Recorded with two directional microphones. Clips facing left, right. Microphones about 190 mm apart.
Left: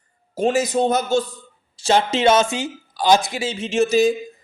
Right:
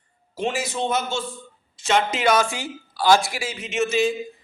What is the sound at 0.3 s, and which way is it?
A man's voice, 40° left (ahead or behind).